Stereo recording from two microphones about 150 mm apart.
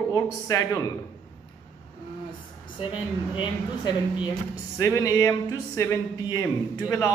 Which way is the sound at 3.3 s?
30° left (ahead or behind).